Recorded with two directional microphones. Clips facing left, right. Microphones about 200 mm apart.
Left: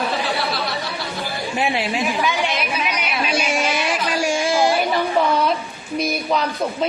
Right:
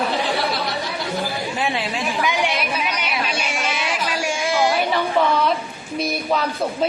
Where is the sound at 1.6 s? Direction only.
25° left (ahead or behind).